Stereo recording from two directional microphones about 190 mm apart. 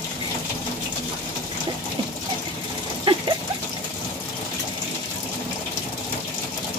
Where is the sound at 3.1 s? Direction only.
30° right (ahead or behind).